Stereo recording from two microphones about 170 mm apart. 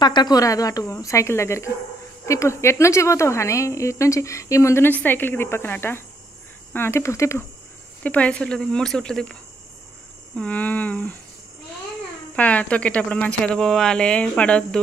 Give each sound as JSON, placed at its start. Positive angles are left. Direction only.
{"t": 0.0, "sound": "a woman's voice", "side_deg": 25}
{"t": 12.4, "sound": "a woman's voice", "side_deg": 10}